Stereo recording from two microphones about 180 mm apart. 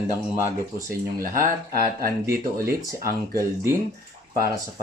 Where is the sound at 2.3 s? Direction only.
60° right (ahead or behind).